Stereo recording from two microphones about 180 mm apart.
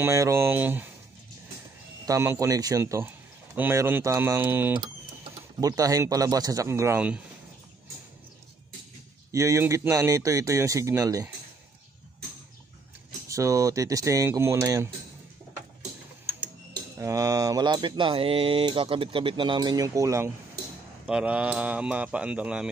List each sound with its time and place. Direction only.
0.0 s speech: 15° right (ahead or behind)
2.0 s speech: 15° right (ahead or behind)
5.6 s mantra: 20° right (ahead or behind)
9.3 s speech: 15° right (ahead or behind)
13.3 s speech: 20° right (ahead or behind)
17.0 s mantra: 20° right (ahead or behind)
21.1 s speech: 5° right (ahead or behind)